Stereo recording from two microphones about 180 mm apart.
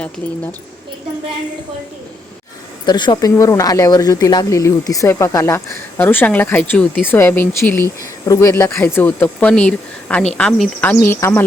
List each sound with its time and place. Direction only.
2.8 s speech: 25° left (ahead or behind)